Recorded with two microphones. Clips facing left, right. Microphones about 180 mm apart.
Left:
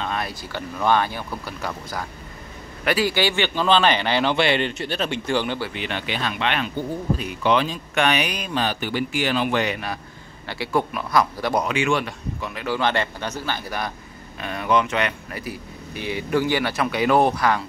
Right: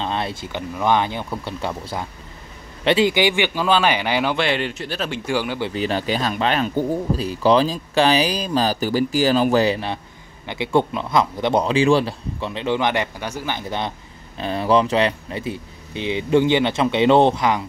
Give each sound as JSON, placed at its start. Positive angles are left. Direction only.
{"t": 0.0, "sound": "a man's voice", "side_deg": -25}
{"t": 5.7, "sound": "speech", "side_deg": -35}
{"t": 10.4, "sound": "speech", "side_deg": -20}